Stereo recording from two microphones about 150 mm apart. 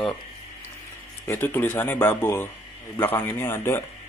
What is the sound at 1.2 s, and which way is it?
Speech, 15° left (ahead or behind).